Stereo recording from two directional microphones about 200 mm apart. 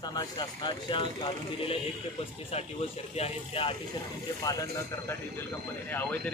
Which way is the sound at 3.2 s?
25° left (ahead or behind).